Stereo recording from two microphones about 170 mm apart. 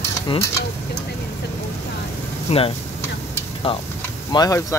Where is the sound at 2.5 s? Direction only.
40° left (ahead or behind).